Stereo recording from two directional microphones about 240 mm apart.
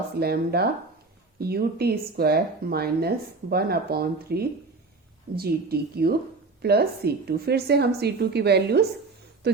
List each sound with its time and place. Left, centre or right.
0.2 s a woman's voice: right